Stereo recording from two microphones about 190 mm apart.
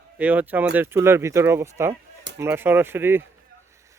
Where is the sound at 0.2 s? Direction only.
10° right (ahead or behind).